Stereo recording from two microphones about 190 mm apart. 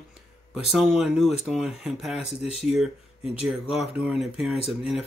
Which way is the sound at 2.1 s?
35° left (ahead or behind).